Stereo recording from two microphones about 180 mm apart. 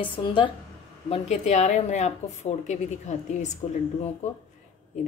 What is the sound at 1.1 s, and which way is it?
A woman's voice, 40° left (ahead or behind).